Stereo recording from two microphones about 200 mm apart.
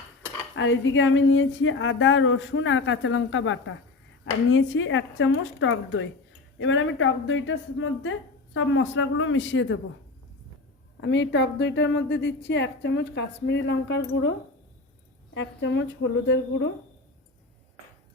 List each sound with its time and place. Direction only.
0.5 s a woman's voice: 75° left (ahead or behind)
11.0 s a woman's voice: 60° left (ahead or behind)
15.4 s a woman's voice: 65° left (ahead or behind)